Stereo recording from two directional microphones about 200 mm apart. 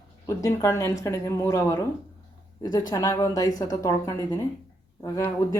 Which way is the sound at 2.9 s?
15° left (ahead or behind).